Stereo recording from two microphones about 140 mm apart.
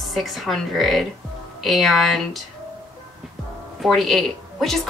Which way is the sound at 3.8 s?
Centre (ahead or behind).